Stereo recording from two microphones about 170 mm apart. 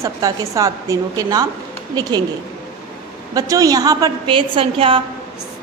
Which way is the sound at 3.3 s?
20° right (ahead or behind).